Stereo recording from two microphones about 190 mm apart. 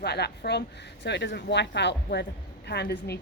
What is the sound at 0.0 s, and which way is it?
A woman's voice, 60° left (ahead or behind).